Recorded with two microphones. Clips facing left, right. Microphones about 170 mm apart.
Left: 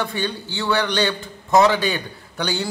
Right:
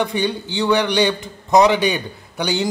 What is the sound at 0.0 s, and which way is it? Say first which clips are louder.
A man's voice: right 5 dB; 15° right (ahead or behind).